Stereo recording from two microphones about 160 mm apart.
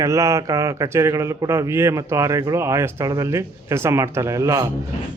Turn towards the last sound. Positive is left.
turn(degrees=-20)  # may be behind; listen again after turning